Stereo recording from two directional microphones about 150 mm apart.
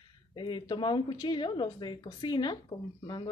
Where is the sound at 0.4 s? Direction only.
30° left (ahead or behind).